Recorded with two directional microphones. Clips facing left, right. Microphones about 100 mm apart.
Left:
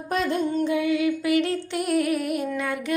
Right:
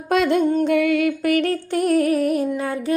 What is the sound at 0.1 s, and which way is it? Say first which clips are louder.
Music: right 7 dB; 75° right (ahead or behind).